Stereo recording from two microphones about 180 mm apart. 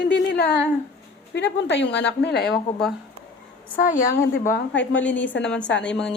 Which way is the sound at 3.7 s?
45° left (ahead or behind).